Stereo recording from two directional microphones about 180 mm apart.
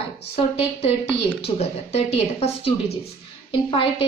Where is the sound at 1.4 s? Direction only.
35° left (ahead or behind).